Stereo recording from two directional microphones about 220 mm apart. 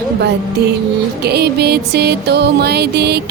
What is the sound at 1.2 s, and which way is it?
Music, 45° right (ahead or behind).